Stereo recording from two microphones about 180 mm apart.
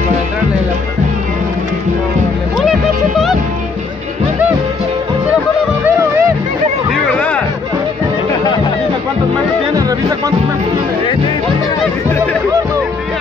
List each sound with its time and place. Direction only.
2.6 s music: centre (ahead or behind)
5.9 s music: 15° right (ahead or behind)
7.1 s music: 5° left (ahead or behind)
9.8 s music: 20° right (ahead or behind)